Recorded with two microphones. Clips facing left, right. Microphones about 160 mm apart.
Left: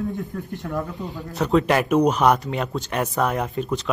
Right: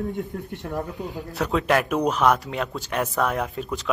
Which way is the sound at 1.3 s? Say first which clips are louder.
Left 3 dB; centre (ahead or behind).